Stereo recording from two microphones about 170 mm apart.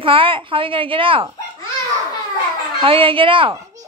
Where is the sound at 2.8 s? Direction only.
30° right (ahead or behind).